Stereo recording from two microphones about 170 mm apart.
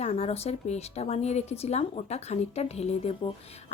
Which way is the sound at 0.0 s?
40° left (ahead or behind).